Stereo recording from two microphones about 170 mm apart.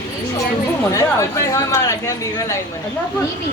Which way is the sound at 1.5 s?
20° left (ahead or behind).